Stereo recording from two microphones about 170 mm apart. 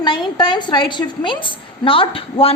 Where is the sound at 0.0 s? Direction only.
25° left (ahead or behind).